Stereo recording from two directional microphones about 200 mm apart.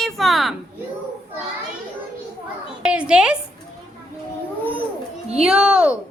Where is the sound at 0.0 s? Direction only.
Centre (ahead or behind).